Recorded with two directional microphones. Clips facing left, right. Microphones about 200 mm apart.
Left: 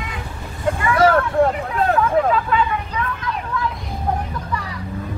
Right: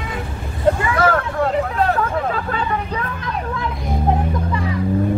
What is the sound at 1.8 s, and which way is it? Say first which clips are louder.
Speech: left 2 dB; 40° right (ahead or behind).